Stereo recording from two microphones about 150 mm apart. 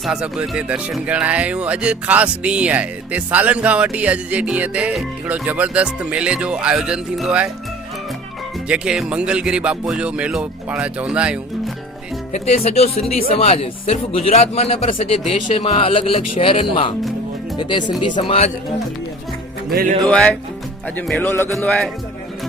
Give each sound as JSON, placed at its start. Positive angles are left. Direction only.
{"t": 0.0, "sound": "speech", "side_deg": -5}
{"t": 8.6, "sound": "speech", "side_deg": -5}
{"t": 12.3, "sound": "speech", "side_deg": 45}
{"t": 20.1, "sound": "music", "side_deg": 5}